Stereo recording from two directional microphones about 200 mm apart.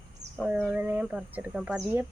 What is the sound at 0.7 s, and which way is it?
Speech, 10° right (ahead or behind).